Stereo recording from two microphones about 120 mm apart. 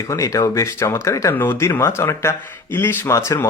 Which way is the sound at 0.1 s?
25° left (ahead or behind).